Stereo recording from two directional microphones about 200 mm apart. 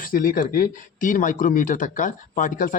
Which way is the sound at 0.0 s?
45° left (ahead or behind).